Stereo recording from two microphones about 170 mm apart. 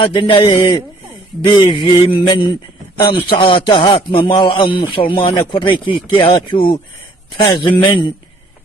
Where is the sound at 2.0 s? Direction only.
30° left (ahead or behind).